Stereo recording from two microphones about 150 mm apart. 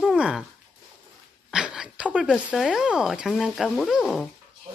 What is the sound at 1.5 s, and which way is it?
Speech, 5° right (ahead or behind).